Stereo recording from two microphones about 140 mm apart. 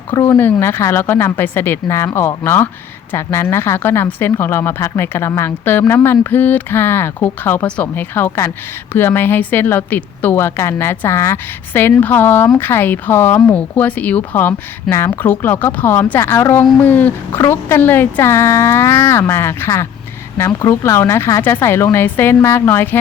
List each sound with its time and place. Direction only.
0.1 s speech: 20° left (ahead or behind)